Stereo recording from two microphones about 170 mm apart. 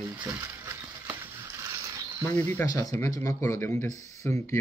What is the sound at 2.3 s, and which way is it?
Speech, 15° left (ahead or behind).